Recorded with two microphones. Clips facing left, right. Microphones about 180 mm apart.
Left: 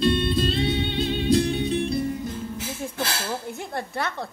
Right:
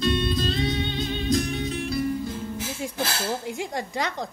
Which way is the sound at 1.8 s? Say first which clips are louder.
Left 2 dB; 25° left (ahead or behind).